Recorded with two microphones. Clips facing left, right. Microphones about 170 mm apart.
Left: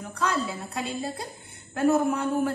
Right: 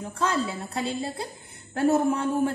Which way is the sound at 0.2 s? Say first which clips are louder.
Right 1 dB; 25° right (ahead or behind).